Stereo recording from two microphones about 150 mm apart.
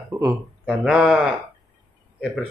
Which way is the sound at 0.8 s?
5° right (ahead or behind).